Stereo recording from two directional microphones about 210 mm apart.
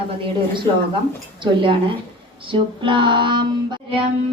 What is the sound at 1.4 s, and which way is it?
A woman's voice, 25° right (ahead or behind).